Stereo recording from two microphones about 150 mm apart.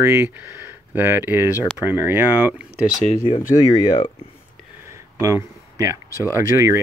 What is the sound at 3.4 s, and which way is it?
Speech, 45° left (ahead or behind).